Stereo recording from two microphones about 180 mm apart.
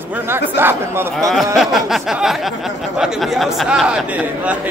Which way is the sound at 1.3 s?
Centre (ahead or behind).